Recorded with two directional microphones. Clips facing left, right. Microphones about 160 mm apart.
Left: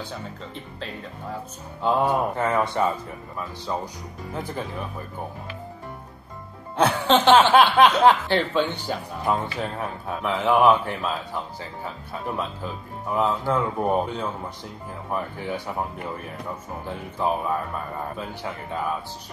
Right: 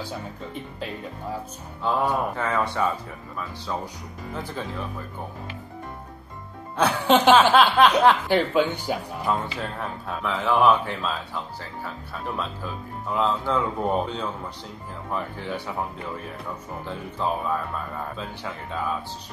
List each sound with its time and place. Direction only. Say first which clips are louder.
1.8 s speech: left 2 dB; 15° left (ahead or behind)
6.9 s speech: right 1 dB; 10° right (ahead or behind)
7.5 s speech: left 1 dB; 10° left (ahead or behind)
8.3 s speech: right 2 dB; 10° right (ahead or behind)
9.2 s speech: left 5 dB; 10° left (ahead or behind)
16.8 s speech: left 2 dB; 10° left (ahead or behind)